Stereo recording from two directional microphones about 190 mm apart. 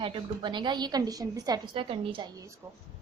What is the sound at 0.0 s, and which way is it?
A woman's voice, 25° right (ahead or behind).